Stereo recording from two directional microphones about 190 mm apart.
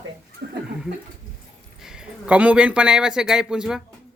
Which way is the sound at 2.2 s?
5° right (ahead or behind).